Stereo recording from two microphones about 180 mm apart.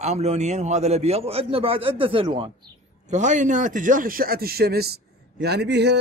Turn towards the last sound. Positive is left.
turn(degrees=-70)  # may be behind; listen again after turning